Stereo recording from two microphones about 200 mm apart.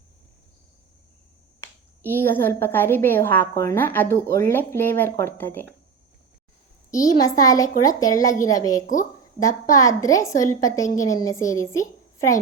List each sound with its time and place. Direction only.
2.0 s a woman's voice: 10° left (ahead or behind)
6.9 s a woman's voice: 15° left (ahead or behind)